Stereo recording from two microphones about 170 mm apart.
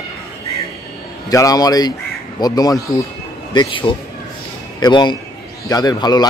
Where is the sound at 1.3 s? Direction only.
20° left (ahead or behind).